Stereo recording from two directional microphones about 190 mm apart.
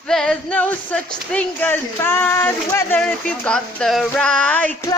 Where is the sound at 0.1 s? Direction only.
5° left (ahead or behind).